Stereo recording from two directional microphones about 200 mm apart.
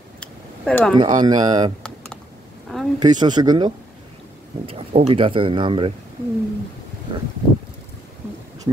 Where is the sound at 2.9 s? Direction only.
20° right (ahead or behind).